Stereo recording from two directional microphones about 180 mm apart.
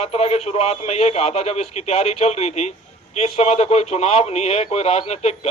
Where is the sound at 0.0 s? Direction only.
35° left (ahead or behind).